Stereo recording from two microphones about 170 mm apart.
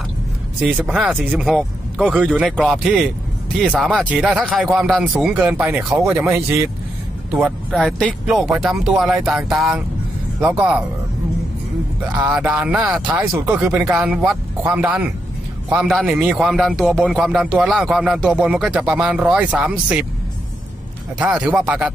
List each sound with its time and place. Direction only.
0.6 s a man's voice: 10° right (ahead or behind)
6.2 s speech: 15° right (ahead or behind)
7.8 s a man's voice: 5° left (ahead or behind)
12.1 s a man's voice: 10° right (ahead or behind)
21.4 s a man's voice: 5° right (ahead or behind)